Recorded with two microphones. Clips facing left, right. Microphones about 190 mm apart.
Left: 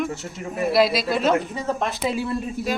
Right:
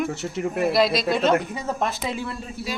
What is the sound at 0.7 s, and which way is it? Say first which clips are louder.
Speech: left 3 dB; 5° left (ahead or behind).